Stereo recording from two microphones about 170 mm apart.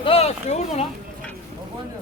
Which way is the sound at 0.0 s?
35° left (ahead or behind).